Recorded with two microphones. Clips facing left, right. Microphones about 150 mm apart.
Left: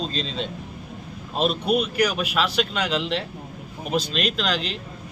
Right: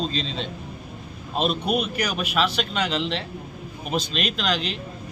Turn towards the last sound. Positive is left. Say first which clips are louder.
# left 1 dB
turn(degrees=0)  # may be behind; listen again after turning